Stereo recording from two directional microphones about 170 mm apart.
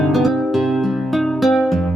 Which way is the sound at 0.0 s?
Centre (ahead or behind).